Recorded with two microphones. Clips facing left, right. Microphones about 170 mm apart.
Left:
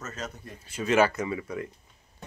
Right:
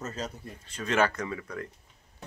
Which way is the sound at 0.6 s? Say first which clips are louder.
Left 4 dB; 10° left (ahead or behind).